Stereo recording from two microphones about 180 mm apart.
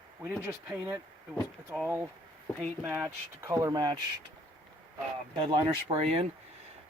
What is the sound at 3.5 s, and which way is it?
Speech, 20° right (ahead or behind).